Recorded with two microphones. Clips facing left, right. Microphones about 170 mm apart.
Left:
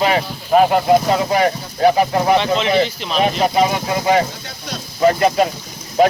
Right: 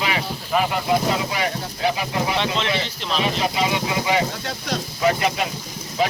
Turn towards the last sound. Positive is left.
turn(degrees=45)  # may be behind; listen again after turning